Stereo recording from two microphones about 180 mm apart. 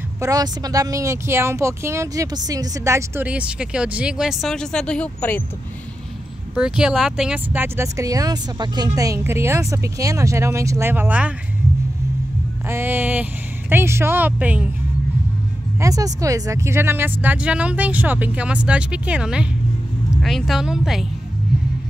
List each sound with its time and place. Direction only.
0.2 s speech: 20° right (ahead or behind); by 5.4 s 10° left (ahead or behind)
6.8 s speech: 5° right (ahead or behind)
12.6 s speech: 10° right (ahead or behind)
15.8 s speech: 20° right (ahead or behind); by 21.1 s centre (ahead or behind)